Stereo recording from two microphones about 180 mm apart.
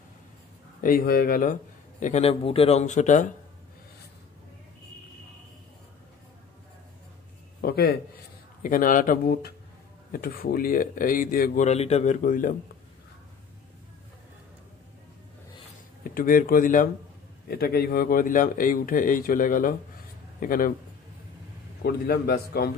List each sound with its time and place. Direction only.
0.7 s speech: 55° left (ahead or behind)
7.6 s a man's voice: 60° left (ahead or behind)
8.6 s speech: 50° left (ahead or behind)
16.0 s a man's voice: 50° left (ahead or behind)
21.8 s a man's voice: 60° left (ahead or behind)